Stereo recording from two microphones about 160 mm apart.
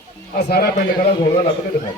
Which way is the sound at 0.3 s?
75° left (ahead or behind).